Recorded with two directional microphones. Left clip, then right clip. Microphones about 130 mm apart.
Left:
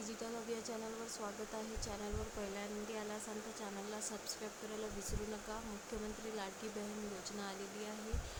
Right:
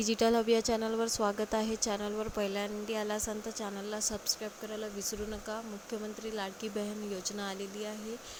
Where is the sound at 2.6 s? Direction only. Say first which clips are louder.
Right 9 dB; 70° right (ahead or behind).